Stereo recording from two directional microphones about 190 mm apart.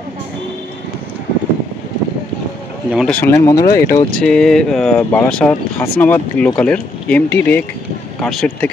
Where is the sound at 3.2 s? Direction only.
15° left (ahead or behind).